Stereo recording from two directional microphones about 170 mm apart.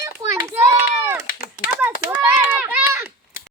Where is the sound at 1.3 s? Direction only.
55° left (ahead or behind).